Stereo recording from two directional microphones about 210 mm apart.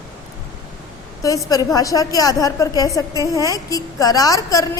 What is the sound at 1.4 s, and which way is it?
A woman's voice, 15° left (ahead or behind).